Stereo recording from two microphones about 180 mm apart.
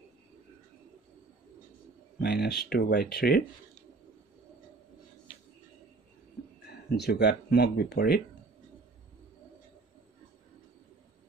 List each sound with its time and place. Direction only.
2.1 s speech: 65° left (ahead or behind)
7.0 s speech: 70° left (ahead or behind)